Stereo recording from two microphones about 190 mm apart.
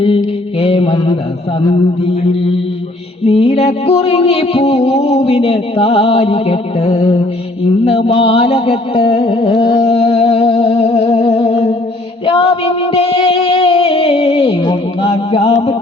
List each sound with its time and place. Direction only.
0.0 s mantra: 30° left (ahead or behind)
3.2 s music: 30° left (ahead or behind)
9.7 s a sound: 30° left (ahead or behind)
12.2 s music: 30° left (ahead or behind)